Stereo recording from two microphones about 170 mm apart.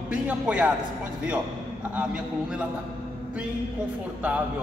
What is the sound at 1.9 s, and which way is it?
Speech, 5° right (ahead or behind).